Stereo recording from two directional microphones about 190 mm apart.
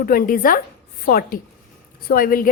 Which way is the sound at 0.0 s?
50° left (ahead or behind).